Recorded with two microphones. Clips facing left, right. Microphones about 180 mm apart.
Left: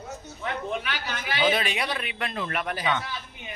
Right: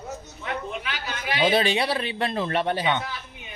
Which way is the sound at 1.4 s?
30° right (ahead or behind).